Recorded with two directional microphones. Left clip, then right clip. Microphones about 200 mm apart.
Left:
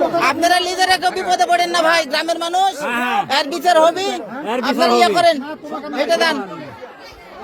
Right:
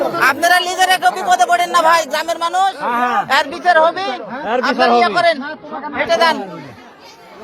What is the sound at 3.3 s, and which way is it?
Speech, 30° left (ahead or behind).